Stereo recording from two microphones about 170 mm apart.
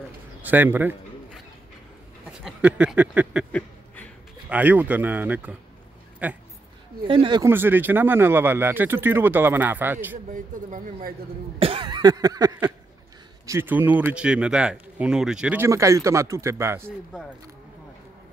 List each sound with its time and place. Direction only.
0.4 s speech: 10° right (ahead or behind)
2.4 s speech: 5° right (ahead or behind)
3.5 s a sound: 10° left (ahead or behind)
4.5 s speech: 10° right (ahead or behind)
7.1 s speech: 30° right (ahead or behind)
7.4 s speech: 10° right (ahead or behind)
10.3 s speech: 50° right (ahead or behind)
11.6 s cough: 30° right (ahead or behind)
13.5 s speech: 10° right (ahead or behind)